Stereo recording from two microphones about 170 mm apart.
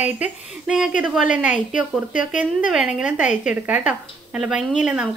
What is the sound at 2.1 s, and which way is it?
Speech, 50° left (ahead or behind).